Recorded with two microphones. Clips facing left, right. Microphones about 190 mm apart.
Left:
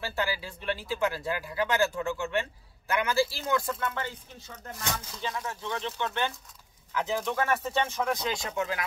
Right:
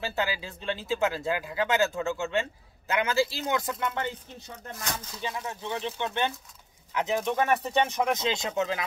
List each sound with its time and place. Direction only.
0.0 s speech: 20° right (ahead or behind)